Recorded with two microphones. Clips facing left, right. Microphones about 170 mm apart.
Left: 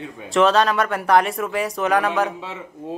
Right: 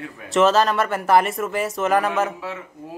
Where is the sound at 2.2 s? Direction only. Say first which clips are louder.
Even; 20° left (ahead or behind).